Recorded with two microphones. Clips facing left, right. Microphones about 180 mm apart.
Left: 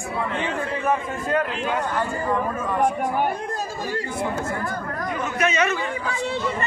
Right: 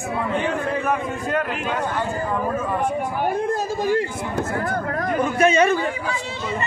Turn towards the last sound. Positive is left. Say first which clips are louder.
# right 5 dB
turn(degrees=-30)  # may be behind; listen again after turning